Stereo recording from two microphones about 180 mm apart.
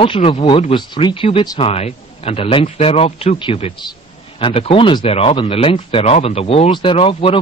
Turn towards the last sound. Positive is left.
turn(degrees=30)  # may be behind; listen again after turning